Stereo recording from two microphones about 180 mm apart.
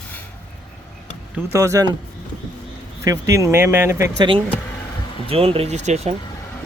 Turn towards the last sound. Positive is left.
turn(degrees=-40)  # may be behind; listen again after turning